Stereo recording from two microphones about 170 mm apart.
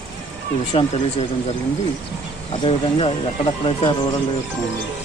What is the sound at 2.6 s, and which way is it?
Speech, 30° left (ahead or behind).